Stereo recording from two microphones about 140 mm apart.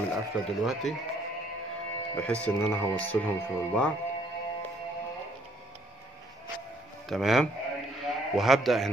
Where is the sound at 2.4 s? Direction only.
15° left (ahead or behind).